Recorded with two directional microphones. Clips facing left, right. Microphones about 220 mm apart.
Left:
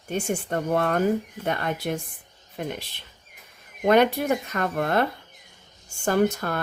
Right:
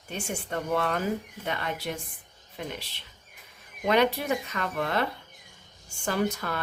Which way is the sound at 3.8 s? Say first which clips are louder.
Left 5 dB; 50° left (ahead or behind).